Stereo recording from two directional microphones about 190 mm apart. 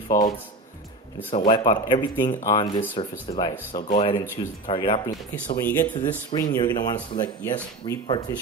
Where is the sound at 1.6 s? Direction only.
25° left (ahead or behind).